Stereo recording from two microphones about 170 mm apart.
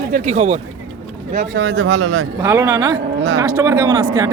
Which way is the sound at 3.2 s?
90° right.